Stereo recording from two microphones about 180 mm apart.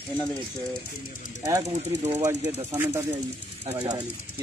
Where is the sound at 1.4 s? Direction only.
20° right (ahead or behind).